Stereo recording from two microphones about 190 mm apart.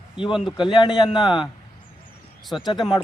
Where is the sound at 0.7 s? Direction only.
25° left (ahead or behind).